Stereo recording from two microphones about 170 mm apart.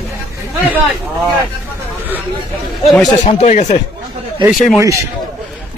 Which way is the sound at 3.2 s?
45° left (ahead or behind).